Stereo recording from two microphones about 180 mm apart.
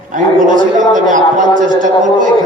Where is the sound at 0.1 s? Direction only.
45° right (ahead or behind).